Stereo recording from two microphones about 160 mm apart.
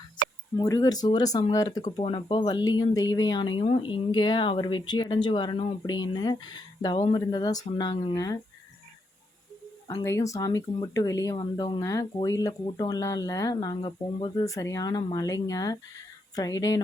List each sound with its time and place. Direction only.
0.5 s speech: 20° left (ahead or behind)
1.8 s speech: 40° left (ahead or behind); by 8.4 s 20° left (ahead or behind)
10.0 s speech: 20° left (ahead or behind)